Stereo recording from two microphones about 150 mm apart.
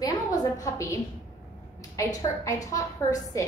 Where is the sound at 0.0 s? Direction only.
25° left (ahead or behind).